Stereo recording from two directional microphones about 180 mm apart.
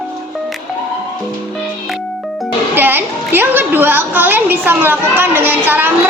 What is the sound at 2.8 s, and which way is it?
A woman's voice, 10° right (ahead or behind).